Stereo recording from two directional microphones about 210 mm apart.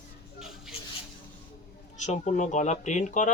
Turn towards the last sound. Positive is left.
turn(degrees=35)  # may be behind; listen again after turning